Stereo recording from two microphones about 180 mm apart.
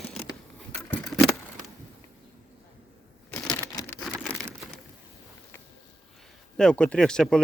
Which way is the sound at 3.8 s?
20° left (ahead or behind).